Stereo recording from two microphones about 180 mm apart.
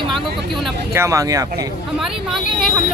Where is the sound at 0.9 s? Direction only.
15° right (ahead or behind).